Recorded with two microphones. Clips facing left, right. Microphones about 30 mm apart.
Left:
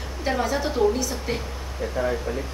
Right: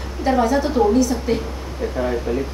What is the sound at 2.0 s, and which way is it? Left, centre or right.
Speech, centre.